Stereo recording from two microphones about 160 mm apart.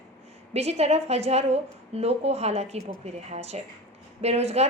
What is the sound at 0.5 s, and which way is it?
A woman's voice, 40° right (ahead or behind).